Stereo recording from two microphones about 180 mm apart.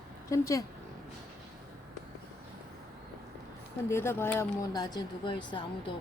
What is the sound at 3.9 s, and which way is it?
Speech, 15° left (ahead or behind).